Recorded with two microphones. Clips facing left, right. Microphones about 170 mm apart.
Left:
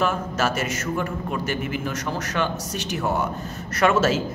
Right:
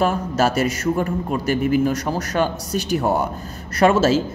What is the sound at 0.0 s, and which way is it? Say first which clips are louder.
A man's voice: right 4 dB; 35° right (ahead or behind).